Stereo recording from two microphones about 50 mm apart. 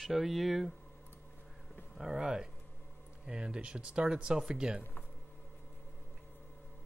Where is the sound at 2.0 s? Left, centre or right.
Centre.